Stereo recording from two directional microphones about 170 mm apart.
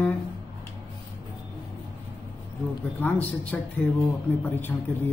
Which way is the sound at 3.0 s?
10° left (ahead or behind).